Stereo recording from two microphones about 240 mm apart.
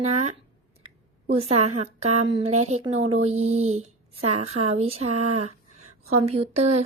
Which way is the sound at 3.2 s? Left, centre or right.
Right.